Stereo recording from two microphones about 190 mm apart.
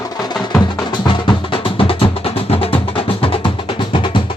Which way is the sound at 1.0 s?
25° left (ahead or behind).